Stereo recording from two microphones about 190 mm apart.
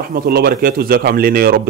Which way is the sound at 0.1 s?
55° right (ahead or behind).